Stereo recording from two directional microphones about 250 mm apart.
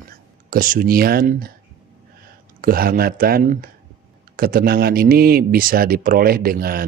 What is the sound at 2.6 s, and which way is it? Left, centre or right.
Speech, right.